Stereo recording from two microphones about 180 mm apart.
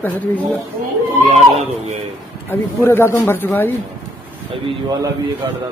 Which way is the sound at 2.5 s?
15° left (ahead or behind).